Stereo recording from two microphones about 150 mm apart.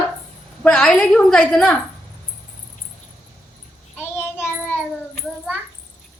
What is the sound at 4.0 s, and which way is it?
Child singing, 15° left (ahead or behind).